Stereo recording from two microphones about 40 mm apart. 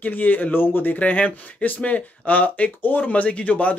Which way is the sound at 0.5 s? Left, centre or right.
Left.